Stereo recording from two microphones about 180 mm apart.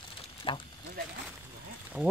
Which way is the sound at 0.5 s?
30° left (ahead or behind).